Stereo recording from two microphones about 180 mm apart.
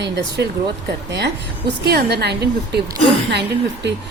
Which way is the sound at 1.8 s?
65° right (ahead or behind).